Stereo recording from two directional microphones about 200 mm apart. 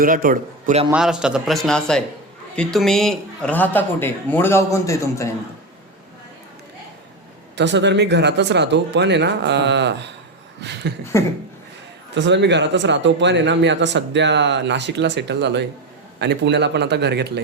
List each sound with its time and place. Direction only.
0.0 s a man's voice: 45° right (ahead or behind)
0.9 s a man's voice: 5° right (ahead or behind); by 5.3 s 15° left (ahead or behind)
7.5 s a man's voice: 60° right (ahead or behind)
11.1 s a man's voice: 15° left (ahead or behind)
12.1 s a man's voice: 60° right (ahead or behind)